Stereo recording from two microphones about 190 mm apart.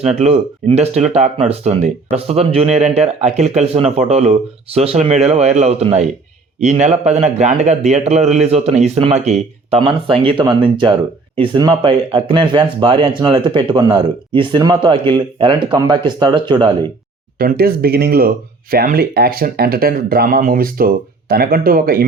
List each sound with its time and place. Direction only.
0.0 s a man's voice: 35° right (ahead or behind)
17.3 s speech: 50° right (ahead or behind)